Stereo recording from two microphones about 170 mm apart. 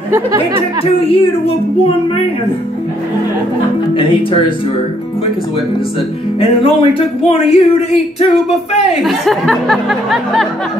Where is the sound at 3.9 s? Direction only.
30° left (ahead or behind).